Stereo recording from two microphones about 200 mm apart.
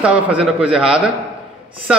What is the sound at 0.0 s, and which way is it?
A man's voice, 5° right (ahead or behind).